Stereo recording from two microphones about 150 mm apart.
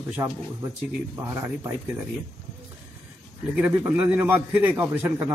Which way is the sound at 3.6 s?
15° right (ahead or behind).